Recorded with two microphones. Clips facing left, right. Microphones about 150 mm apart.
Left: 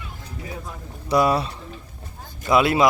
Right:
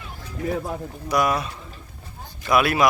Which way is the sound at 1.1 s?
30° left (ahead or behind).